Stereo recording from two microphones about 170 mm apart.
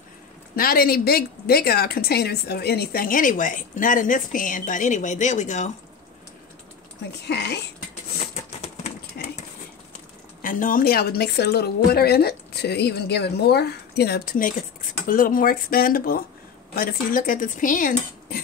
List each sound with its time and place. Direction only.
0.6 s a woman's voice: 60° left (ahead or behind)
7.2 s speech: 80° left
10.4 s a woman's voice: 50° left (ahead or behind)